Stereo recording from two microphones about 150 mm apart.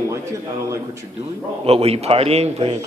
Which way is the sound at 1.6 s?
40° right (ahead or behind).